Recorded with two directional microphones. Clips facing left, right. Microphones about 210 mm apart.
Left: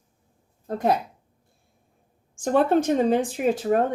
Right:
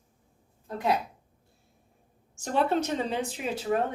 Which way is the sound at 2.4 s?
50° left (ahead or behind).